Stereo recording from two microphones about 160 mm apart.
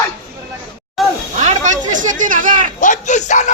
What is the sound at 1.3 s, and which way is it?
Speech, 50° right (ahead or behind).